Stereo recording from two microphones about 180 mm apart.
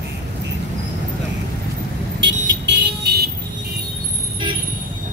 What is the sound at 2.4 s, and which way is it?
Vehicle, 75° right (ahead or behind).